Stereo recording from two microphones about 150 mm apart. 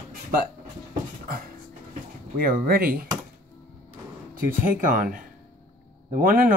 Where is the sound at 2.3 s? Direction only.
80° right.